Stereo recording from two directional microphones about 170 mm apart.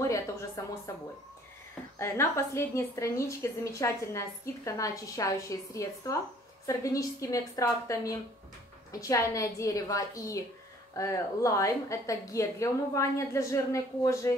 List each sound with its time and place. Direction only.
0.0 s a woman's voice: 20° left (ahead or behind)